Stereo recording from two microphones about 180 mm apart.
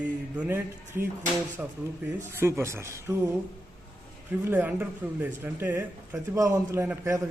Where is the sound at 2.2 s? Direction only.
15° right (ahead or behind).